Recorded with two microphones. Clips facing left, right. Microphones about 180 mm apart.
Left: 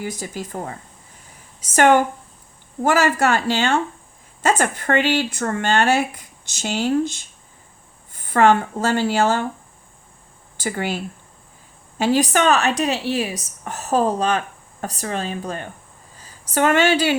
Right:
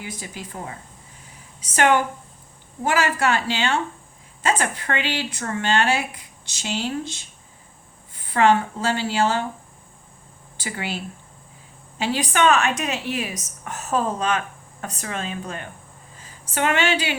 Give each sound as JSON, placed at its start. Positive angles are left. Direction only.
{"t": 0.0, "sound": "speech", "side_deg": 40}
{"t": 10.6, "sound": "a woman's voice", "side_deg": 45}